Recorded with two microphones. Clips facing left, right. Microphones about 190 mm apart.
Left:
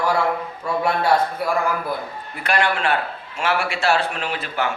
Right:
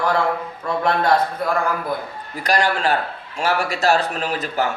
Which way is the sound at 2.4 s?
35° right (ahead or behind).